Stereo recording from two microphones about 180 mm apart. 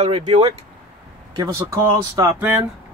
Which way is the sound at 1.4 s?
15° right (ahead or behind).